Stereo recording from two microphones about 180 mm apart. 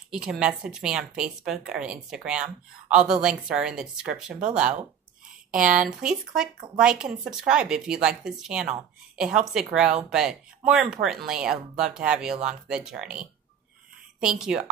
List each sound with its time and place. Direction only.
0.1 s a woman's voice: 5° right (ahead or behind)
5.6 s speech: 45° right (ahead or behind)
5.9 s a woman's voice: 5° right (ahead or behind)